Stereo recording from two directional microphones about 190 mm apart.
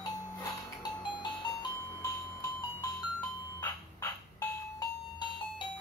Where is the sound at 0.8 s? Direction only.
20° left (ahead or behind).